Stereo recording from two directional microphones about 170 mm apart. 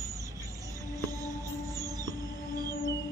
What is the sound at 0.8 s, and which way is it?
Music, 20° right (ahead or behind).